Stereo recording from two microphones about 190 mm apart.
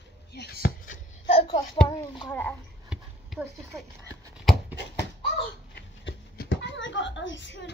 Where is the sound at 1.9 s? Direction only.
20° left (ahead or behind).